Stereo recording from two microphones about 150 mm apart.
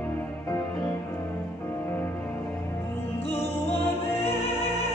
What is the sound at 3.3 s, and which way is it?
Music, 15° left (ahead or behind).